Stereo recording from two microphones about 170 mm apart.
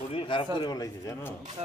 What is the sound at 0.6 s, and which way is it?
Speech, 20° left (ahead or behind).